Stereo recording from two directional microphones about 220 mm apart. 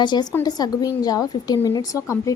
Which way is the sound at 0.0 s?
20° left (ahead or behind).